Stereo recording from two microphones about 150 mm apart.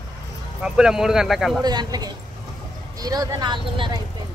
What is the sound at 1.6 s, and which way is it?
Speech, 25° right (ahead or behind).